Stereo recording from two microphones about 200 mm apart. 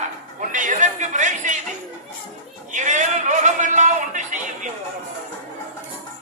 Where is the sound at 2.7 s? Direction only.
35° right (ahead or behind).